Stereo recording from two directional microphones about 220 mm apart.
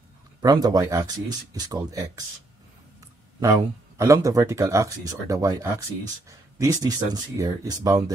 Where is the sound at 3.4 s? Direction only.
15° right (ahead or behind).